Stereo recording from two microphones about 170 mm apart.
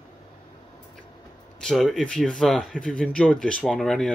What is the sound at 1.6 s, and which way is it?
Speech, centre (ahead or behind).